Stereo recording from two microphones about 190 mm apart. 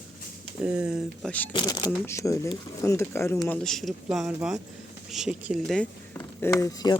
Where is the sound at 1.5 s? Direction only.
20° left (ahead or behind).